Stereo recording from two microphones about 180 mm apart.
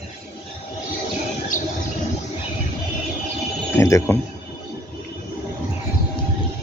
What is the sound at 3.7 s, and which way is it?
Speech, 15° left (ahead or behind).